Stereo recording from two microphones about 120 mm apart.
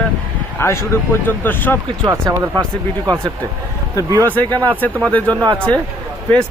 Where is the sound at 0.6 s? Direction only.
20° left (ahead or behind).